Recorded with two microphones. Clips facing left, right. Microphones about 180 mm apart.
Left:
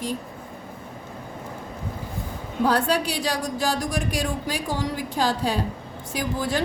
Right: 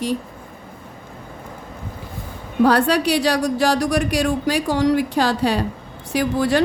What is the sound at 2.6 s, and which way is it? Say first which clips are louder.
A woman's voice: right 6 dB; 75° right (ahead or behind).